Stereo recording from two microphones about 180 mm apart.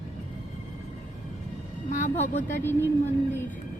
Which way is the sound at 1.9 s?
40° left (ahead or behind).